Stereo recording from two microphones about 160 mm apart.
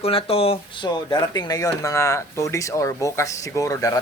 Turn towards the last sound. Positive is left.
turn(degrees=20)  # may be behind; listen again after turning